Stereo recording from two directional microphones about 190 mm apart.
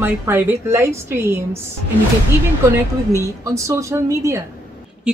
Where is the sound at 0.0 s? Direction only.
15° right (ahead or behind).